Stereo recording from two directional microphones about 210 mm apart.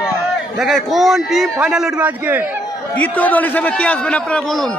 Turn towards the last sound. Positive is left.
turn(degrees=5)  # may be behind; listen again after turning